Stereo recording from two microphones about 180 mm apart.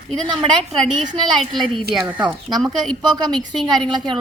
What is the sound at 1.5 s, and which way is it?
Speech, centre (ahead or behind).